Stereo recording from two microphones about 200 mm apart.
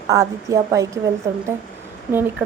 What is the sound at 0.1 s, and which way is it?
A woman's voice, 15° right (ahead or behind).